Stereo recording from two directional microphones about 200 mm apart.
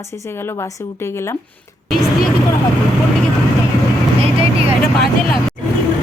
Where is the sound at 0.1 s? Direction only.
10° left (ahead or behind).